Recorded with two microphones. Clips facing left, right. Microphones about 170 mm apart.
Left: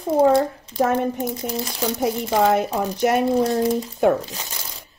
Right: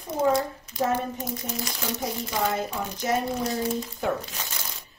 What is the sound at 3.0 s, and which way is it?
Speech, 65° left (ahead or behind).